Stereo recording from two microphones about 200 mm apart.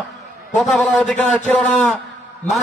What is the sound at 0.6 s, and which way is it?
A man's voice, centre (ahead or behind).